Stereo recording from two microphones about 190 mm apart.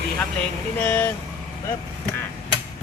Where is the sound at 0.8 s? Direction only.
10° left (ahead or behind).